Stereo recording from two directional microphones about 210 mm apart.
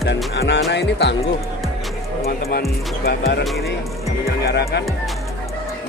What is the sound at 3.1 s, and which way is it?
Speech, 50° left (ahead or behind).